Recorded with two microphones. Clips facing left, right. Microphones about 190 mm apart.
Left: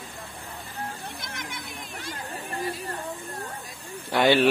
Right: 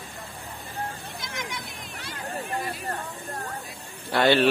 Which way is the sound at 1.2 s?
55° left (ahead or behind).